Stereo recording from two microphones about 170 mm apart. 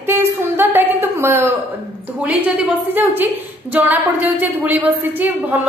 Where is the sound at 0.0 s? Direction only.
15° right (ahead or behind).